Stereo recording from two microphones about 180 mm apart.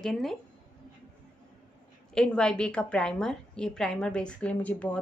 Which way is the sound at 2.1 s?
5° left (ahead or behind).